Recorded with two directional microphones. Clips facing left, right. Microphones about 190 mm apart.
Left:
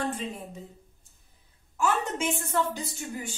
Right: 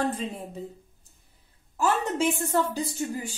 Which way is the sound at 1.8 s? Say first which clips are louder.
Right 3 dB; 35° right (ahead or behind).